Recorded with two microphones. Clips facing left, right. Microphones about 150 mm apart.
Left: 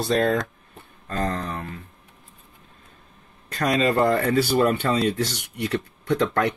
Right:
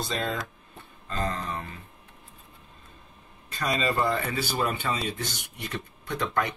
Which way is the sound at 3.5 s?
65° left (ahead or behind).